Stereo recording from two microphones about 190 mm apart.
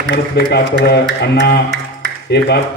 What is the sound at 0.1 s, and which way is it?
Speech, 60° left (ahead or behind).